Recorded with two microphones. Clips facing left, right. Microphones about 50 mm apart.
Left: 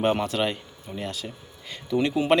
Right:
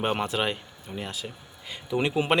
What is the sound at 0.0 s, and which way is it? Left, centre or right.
Speech, centre.